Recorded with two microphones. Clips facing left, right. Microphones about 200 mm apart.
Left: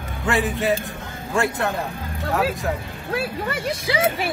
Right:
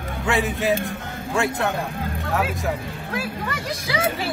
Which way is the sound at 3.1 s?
25° left (ahead or behind).